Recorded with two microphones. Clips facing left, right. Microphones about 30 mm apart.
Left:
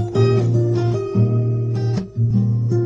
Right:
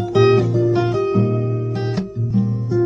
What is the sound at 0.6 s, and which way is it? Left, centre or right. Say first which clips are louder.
Music: right 4 dB; right.